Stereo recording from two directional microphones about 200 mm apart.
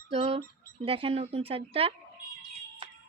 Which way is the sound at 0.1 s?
30° right (ahead or behind).